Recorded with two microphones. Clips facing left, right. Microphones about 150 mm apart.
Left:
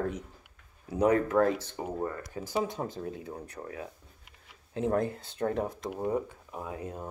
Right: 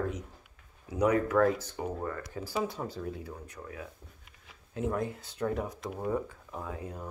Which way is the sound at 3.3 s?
35° left (ahead or behind).